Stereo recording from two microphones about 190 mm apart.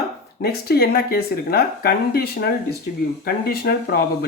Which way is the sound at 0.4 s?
55° left (ahead or behind).